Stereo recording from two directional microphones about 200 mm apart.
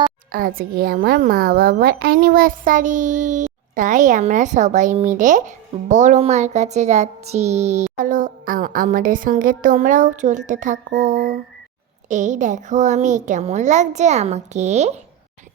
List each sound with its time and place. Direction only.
0.3 s a woman's voice: 45° right (ahead or behind)